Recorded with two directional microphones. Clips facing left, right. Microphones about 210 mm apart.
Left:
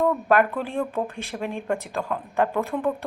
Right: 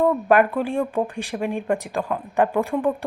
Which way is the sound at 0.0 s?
15° right (ahead or behind).